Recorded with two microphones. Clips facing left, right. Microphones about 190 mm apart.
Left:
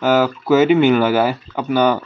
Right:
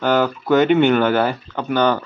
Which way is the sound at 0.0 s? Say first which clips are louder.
Left 2 dB; 5° left (ahead or behind).